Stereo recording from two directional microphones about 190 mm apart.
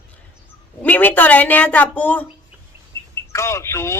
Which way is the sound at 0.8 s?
10° left (ahead or behind).